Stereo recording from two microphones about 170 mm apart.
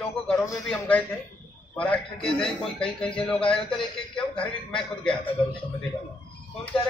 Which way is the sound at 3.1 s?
5° left (ahead or behind).